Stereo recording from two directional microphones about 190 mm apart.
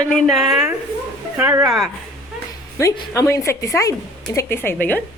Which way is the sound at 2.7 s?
15° left (ahead or behind).